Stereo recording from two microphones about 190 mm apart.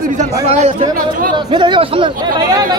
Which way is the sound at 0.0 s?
40° right (ahead or behind).